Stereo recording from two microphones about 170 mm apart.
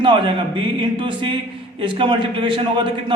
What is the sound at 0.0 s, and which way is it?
A man's voice, 30° right (ahead or behind).